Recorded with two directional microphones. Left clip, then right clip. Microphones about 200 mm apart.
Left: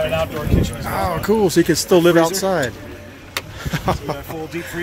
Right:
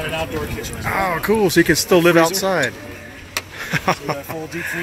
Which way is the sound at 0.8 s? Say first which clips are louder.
Right 2 dB; 10° left (ahead or behind).